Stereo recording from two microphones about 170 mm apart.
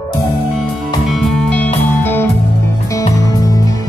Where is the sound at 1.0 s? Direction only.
Centre (ahead or behind).